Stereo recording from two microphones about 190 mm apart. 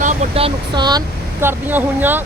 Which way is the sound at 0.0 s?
35° right (ahead or behind).